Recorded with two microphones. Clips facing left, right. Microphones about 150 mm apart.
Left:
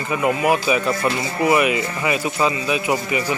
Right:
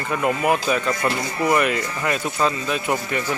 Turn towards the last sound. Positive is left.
turn(degrees=10)  # may be behind; listen again after turning